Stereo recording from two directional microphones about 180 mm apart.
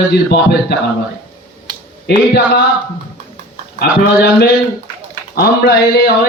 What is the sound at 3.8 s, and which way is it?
A man's voice, 60° left (ahead or behind).